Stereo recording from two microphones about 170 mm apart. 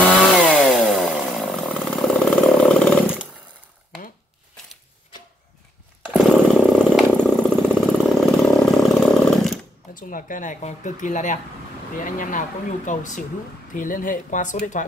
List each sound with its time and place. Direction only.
0.4 s chainsaw: centre (ahead or behind)
6.1 s a sound: 5° left (ahead or behind)
9.9 s speech: 55° left (ahead or behind)